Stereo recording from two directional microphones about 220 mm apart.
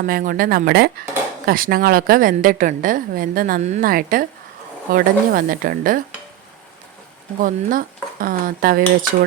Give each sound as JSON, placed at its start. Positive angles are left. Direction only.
{"t": 0.0, "sound": "a woman's voice", "side_deg": -40}
{"t": 7.4, "sound": "a woman's voice", "side_deg": -40}